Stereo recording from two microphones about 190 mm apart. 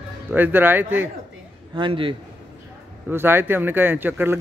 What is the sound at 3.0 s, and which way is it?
A man's voice, 10° right (ahead or behind).